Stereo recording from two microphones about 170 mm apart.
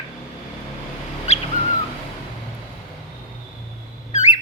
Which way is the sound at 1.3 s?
40° left (ahead or behind).